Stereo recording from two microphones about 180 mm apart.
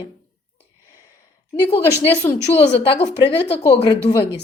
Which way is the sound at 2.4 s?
35° left (ahead or behind).